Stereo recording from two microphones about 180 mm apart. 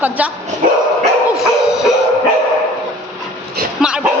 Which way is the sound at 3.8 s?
5° right (ahead or behind).